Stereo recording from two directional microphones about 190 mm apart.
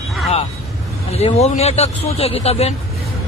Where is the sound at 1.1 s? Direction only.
35° left (ahead or behind).